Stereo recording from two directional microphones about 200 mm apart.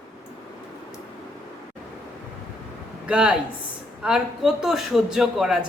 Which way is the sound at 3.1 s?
5° right (ahead or behind).